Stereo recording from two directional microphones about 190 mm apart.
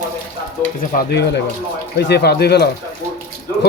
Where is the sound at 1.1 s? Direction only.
60° left (ahead or behind).